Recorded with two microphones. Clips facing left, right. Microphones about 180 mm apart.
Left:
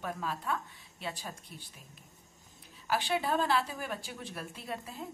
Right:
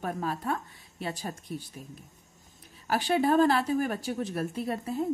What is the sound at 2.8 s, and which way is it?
Speech, 45° right (ahead or behind).